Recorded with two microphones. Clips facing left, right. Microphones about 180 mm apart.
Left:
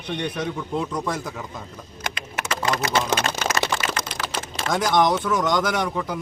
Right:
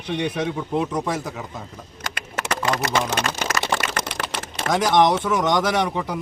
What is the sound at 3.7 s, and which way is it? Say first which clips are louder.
Typing: right 2 dB; 65° right (ahead or behind).